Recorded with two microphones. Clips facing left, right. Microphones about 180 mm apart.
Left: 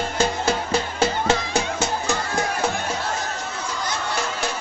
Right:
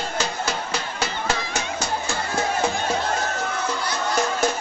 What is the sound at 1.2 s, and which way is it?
Music, 25° left (ahead or behind).